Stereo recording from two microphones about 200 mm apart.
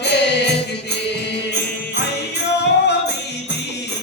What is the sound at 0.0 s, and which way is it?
Music, 60° left (ahead or behind).